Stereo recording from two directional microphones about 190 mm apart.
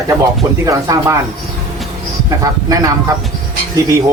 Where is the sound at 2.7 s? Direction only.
20° right (ahead or behind).